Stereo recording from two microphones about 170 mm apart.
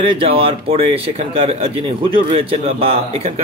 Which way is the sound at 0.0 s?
35° right (ahead or behind).